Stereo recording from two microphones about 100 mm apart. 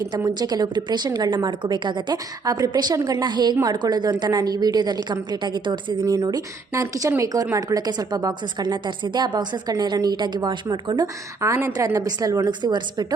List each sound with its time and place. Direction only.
0.3 s a woman's voice: 45° right (ahead or behind)
6.1 s a woman's voice: 40° right (ahead or behind)
11.3 s speech: 30° right (ahead or behind)
12.5 s a woman's voice: 45° right (ahead or behind)